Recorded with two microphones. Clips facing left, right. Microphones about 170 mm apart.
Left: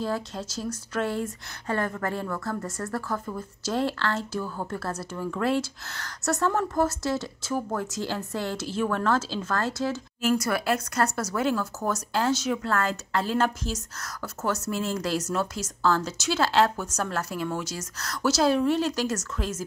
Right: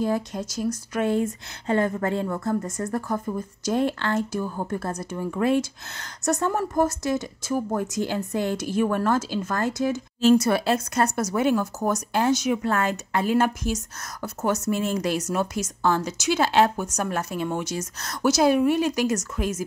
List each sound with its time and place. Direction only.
0.0 s speech: 15° right (ahead or behind)